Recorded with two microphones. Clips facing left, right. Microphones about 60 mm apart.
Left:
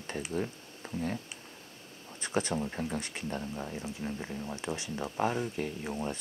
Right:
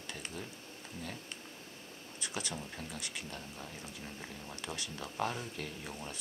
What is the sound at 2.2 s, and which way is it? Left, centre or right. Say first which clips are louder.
Speech: left 10 dB; left.